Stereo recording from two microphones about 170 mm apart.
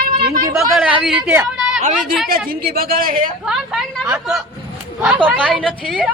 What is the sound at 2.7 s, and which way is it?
Speech, 60° right (ahead or behind).